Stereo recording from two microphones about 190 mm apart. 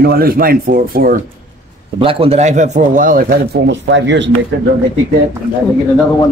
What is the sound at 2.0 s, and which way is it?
Speech, 30° right (ahead or behind).